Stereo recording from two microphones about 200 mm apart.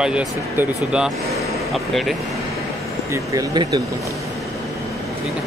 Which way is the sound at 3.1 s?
15° right (ahead or behind).